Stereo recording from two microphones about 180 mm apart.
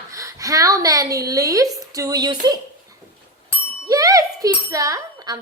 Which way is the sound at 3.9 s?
20° right (ahead or behind).